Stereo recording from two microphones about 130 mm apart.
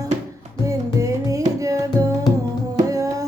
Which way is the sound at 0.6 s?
25° right (ahead or behind).